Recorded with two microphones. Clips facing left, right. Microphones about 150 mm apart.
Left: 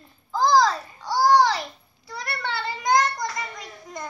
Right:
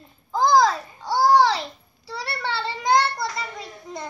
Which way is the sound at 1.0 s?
25° right (ahead or behind).